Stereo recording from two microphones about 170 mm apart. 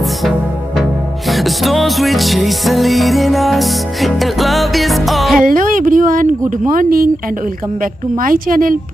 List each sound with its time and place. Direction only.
1.3 s music: centre (ahead or behind)
5.4 s a sound: 55° right (ahead or behind)
7.8 s a woman's voice: 55° right (ahead or behind)